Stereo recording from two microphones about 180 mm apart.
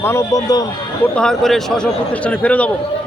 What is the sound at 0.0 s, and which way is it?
Speech, 15° left (ahead or behind).